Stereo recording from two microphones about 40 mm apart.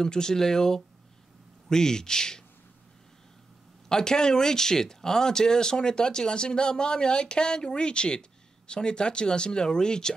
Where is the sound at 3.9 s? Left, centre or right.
Centre.